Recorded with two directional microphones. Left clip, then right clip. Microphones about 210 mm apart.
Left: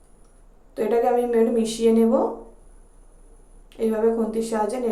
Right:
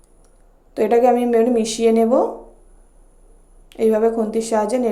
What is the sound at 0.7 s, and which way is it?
Speech, 35° right (ahead or behind).